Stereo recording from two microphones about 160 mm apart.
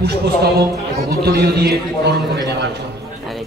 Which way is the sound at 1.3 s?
80° right.